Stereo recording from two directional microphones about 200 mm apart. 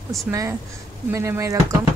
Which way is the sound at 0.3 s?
15° right (ahead or behind).